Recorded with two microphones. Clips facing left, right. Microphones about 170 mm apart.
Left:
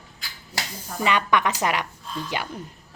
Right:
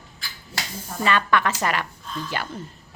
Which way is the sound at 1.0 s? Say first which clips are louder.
Even; 15° left (ahead or behind).